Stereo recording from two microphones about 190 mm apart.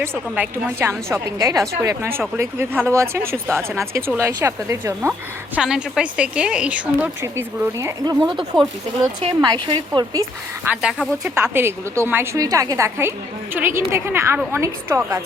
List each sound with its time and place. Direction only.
0.0 s a woman's voice: 10° right (ahead or behind)
3.3 s speech: 5° left (ahead or behind)
3.8 s a woman's voice: 15° right (ahead or behind)
5.5 s a woman's voice: 5° right (ahead or behind)